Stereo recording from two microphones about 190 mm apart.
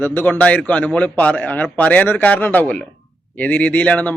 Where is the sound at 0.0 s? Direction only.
10° left (ahead or behind).